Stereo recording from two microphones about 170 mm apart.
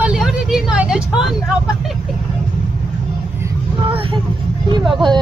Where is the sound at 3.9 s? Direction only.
30° right (ahead or behind).